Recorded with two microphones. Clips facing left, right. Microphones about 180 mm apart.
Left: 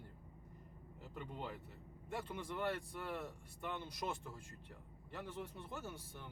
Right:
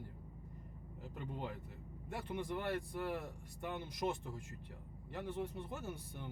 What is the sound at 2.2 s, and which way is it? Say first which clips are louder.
Speech: right 2 dB; 15° right (ahead or behind).